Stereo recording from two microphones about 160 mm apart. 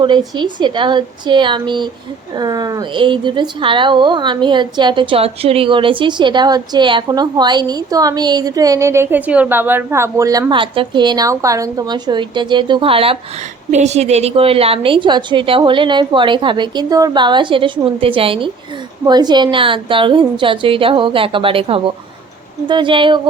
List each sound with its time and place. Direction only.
0.3 s a woman's voice: 30° right (ahead or behind)
10.5 s a woman's voice: 30° right (ahead or behind)